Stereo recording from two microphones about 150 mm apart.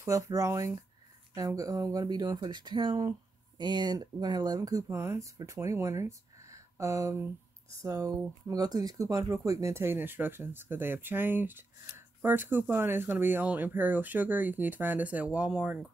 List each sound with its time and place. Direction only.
0.0 s speech: 20° right (ahead or behind)